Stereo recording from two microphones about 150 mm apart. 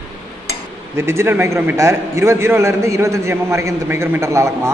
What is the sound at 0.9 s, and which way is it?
A man's voice, 15° right (ahead or behind).